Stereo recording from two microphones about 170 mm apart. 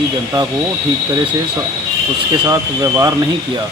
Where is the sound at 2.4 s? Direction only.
20° right (ahead or behind).